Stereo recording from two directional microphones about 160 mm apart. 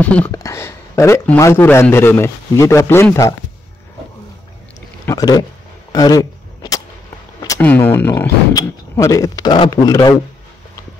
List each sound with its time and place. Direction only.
0.0 s a man's voice: 10° left (ahead or behind)
0.3 s a man's voice: 20° left (ahead or behind)
5.0 s a sound: 20° left (ahead or behind)
7.6 s a man's voice: 10° left (ahead or behind)